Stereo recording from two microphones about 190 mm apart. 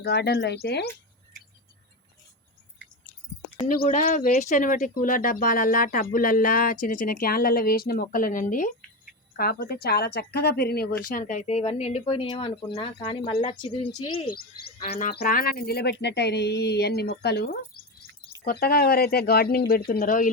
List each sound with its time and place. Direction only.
0.0 s speech: 60° left (ahead or behind)
3.7 s speech: 45° left (ahead or behind)
9.3 s speech: 55° left (ahead or behind)
11.4 s speech: 30° left (ahead or behind)
14.3 s speech: 50° left (ahead or behind)